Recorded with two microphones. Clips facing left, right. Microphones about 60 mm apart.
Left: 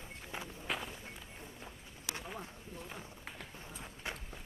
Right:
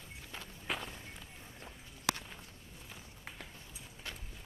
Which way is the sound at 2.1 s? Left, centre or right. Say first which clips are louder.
Left 5 dB; centre.